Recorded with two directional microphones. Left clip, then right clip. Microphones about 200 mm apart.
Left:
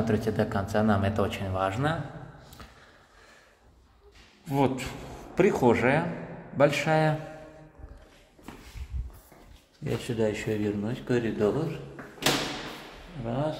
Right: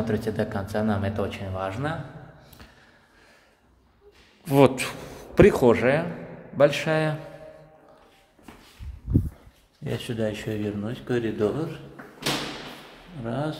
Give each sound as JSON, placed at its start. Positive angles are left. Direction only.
{"t": 0.0, "sound": "speech", "side_deg": 0}
{"t": 4.5, "sound": "a man's voice", "side_deg": -40}
{"t": 5.3, "sound": "speech", "side_deg": -25}
{"t": 9.8, "sound": "speech", "side_deg": -15}
{"t": 13.2, "sound": "speech", "side_deg": -25}